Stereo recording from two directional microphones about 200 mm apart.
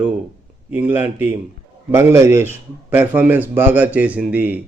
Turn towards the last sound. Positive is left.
turn(degrees=-10)  # may be behind; listen again after turning